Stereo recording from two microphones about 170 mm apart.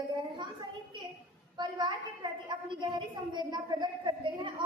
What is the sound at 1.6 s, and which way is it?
A woman's voice, 25° right (ahead or behind).